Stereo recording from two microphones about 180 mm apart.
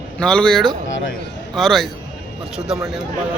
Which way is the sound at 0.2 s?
5° left (ahead or behind).